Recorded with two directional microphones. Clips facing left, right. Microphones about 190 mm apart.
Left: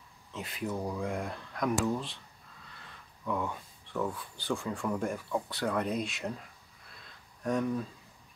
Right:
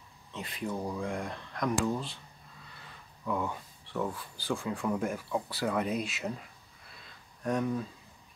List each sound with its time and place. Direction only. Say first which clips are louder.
0.3 s speech: even; centre (ahead or behind)
2.8 s speech: right 1 dB; 5° right (ahead or behind)
7.1 s a sound: even; centre (ahead or behind)